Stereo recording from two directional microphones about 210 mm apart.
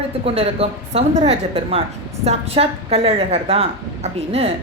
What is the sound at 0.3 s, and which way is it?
A woman's voice, 30° right (ahead or behind).